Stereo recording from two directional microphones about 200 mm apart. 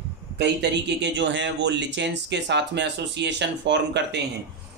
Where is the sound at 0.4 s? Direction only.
60° right (ahead or behind).